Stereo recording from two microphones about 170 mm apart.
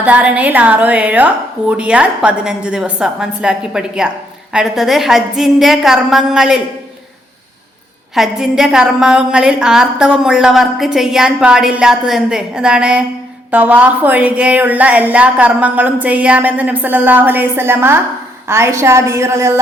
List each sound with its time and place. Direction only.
0.0 s a woman's voice: 10° right (ahead or behind)
8.1 s a woman's voice: centre (ahead or behind)